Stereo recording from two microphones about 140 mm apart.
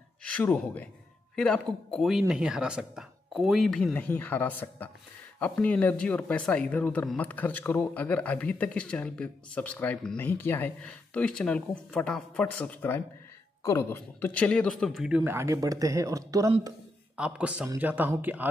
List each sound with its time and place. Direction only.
0.2 s speech: 10° left (ahead or behind); by 15.3 s 5° right (ahead or behind)
15.3 s speech: 20° right (ahead or behind)
17.2 s speech: 10° right (ahead or behind)